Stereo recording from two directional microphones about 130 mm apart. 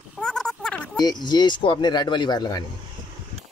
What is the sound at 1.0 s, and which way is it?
Speech, 35° left (ahead or behind).